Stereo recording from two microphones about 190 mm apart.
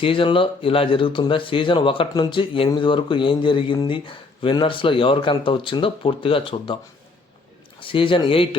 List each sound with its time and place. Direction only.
0.0 s speech: 25° left (ahead or behind)
7.8 s speech: 25° left (ahead or behind)